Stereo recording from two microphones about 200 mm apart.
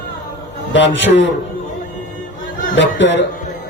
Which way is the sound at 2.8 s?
65° left (ahead or behind).